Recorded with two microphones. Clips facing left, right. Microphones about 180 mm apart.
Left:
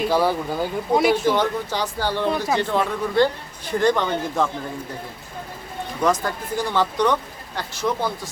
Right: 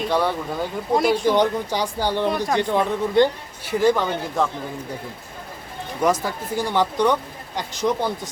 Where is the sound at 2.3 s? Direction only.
5° left (ahead or behind).